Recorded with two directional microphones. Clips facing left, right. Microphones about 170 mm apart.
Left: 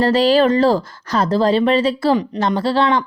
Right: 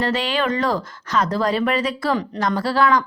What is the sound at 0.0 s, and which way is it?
A woman's voice, 35° left (ahead or behind).